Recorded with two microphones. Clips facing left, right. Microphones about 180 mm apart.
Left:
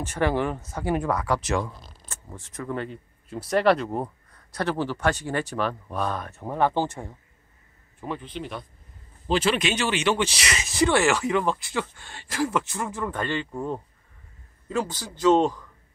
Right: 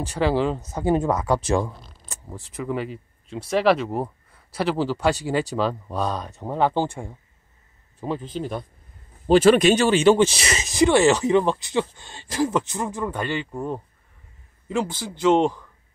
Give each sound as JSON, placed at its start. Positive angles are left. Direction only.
{"t": 0.2, "sound": "speech", "side_deg": -5}
{"t": 0.5, "sound": "speech", "side_deg": -20}
{"t": 2.5, "sound": "speech", "side_deg": -5}
{"t": 8.0, "sound": "speech", "side_deg": -35}
{"t": 10.2, "sound": "a sound", "side_deg": -25}
{"t": 10.7, "sound": "speech", "side_deg": -15}
{"t": 14.9, "sound": "speech", "side_deg": -25}